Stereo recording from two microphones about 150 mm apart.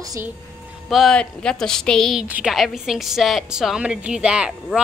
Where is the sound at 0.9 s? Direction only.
5° left (ahead or behind).